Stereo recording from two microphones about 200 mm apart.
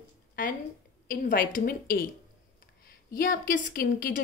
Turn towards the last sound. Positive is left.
turn(degrees=45)  # may be behind; listen again after turning